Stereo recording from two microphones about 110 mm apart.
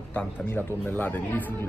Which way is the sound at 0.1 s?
10° left (ahead or behind).